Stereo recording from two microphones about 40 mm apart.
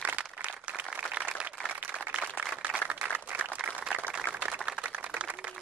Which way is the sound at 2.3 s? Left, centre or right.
Right.